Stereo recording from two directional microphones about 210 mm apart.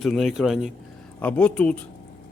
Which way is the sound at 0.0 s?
Centre (ahead or behind).